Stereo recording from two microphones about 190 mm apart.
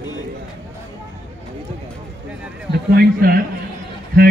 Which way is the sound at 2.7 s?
55° right (ahead or behind).